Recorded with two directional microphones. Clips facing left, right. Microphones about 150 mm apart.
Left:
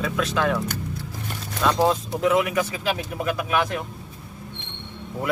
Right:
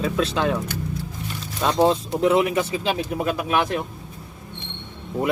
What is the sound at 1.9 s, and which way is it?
Speech, 30° right (ahead or behind).